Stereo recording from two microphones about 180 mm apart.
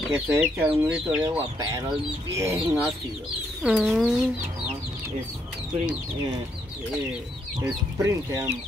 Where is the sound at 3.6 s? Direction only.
5° right (ahead or behind).